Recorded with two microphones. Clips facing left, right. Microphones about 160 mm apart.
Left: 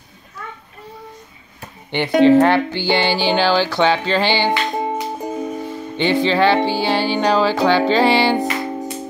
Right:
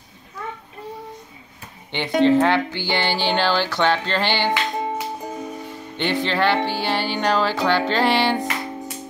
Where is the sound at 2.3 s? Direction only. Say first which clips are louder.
Left 5 dB; 70° left (ahead or behind).